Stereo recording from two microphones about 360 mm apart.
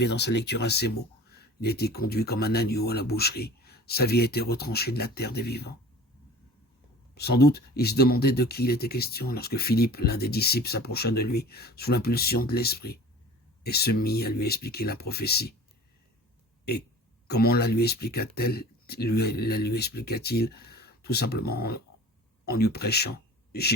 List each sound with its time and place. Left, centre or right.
0.0 s speech: left
7.2 s speech: left
17.2 s speech: left